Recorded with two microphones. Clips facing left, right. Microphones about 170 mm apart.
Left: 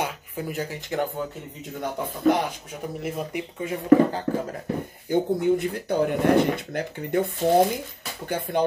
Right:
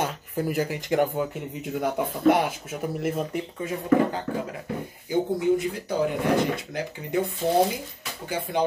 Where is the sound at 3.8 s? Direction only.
40° left (ahead or behind).